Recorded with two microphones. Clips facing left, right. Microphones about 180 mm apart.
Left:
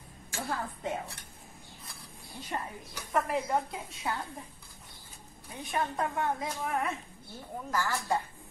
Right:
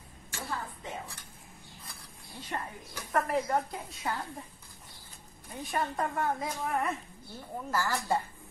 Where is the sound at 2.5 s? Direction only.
15° left (ahead or behind).